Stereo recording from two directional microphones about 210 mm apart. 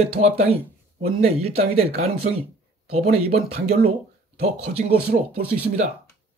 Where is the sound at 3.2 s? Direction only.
30° right (ahead or behind).